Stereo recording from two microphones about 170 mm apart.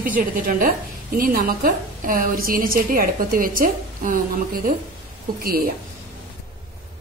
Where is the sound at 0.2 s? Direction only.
55° right (ahead or behind).